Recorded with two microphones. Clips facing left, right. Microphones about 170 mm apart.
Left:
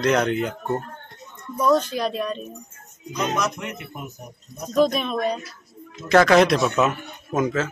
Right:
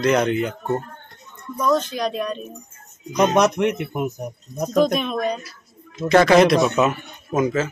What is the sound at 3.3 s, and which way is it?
Speech, 75° right (ahead or behind).